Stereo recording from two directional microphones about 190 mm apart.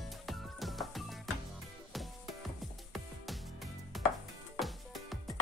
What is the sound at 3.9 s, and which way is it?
Chopping, centre (ahead or behind).